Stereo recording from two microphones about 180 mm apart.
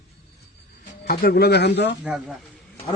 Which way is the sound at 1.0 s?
60° left (ahead or behind).